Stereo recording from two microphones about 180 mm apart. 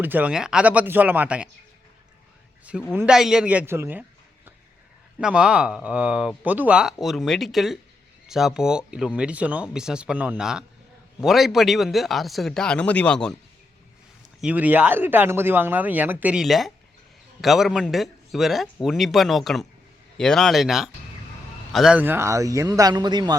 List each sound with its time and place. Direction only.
0.0 s speech: 10° right (ahead or behind)
2.6 s speech: 10° right (ahead or behind)
5.2 s speech: 5° right (ahead or behind)
14.4 s speech: 10° right (ahead or behind)